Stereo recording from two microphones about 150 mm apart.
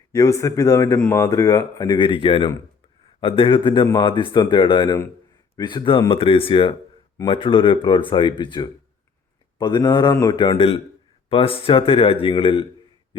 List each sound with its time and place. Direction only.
0.1 s speech: 20° left (ahead or behind)